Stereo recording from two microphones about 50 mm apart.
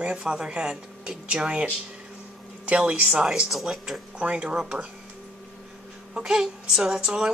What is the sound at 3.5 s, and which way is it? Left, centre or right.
Speech, centre.